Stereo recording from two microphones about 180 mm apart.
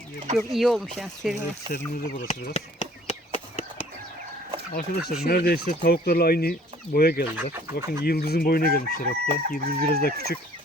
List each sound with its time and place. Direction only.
0.3 s speech: centre (ahead or behind)
1.9 s a sound: 40° left (ahead or behind)
4.7 s speech: 60° left (ahead or behind)
7.3 s speech: 15° right (ahead or behind)
8.0 s speech: 60° left (ahead or behind)